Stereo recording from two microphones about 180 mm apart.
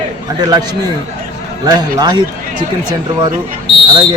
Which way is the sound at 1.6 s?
20° right (ahead or behind).